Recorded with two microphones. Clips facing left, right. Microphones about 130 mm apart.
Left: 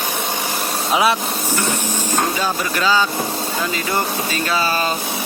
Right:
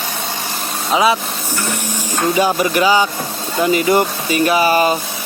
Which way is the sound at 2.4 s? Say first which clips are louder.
Right 6 dB; 15° right (ahead or behind).